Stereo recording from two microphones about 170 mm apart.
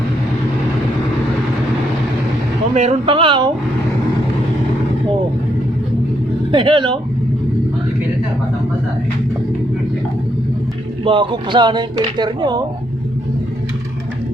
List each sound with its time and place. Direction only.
2.7 s speech: 35° right (ahead or behind)
6.5 s speech: 30° right (ahead or behind)
11.0 s speech: 30° right (ahead or behind)